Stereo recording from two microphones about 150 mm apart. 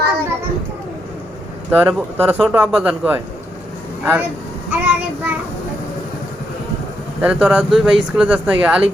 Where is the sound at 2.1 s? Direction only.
15° right (ahead or behind).